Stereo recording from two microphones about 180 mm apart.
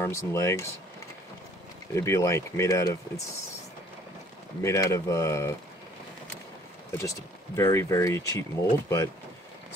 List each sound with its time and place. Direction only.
0.0 s speech: 15° left (ahead or behind)
2.0 s speech: 15° left (ahead or behind)
4.6 s speech: 15° left (ahead or behind)
6.9 s speech: 15° left (ahead or behind)